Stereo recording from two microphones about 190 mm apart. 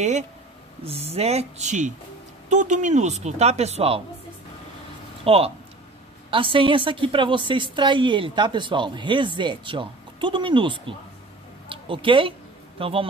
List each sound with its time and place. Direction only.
0.8 s speech: 35° right (ahead or behind)
5.2 s a woman's voice: 30° right (ahead or behind)
11.7 s a sound: 25° right (ahead or behind)